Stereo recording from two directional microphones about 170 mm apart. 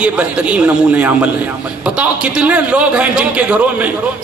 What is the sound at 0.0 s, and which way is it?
A man's voice, 5° right (ahead or behind).